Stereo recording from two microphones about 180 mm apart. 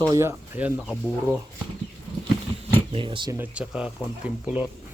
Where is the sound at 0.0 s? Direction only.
15° right (ahead or behind).